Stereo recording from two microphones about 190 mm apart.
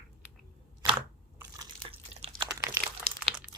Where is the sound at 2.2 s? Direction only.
30° right (ahead or behind).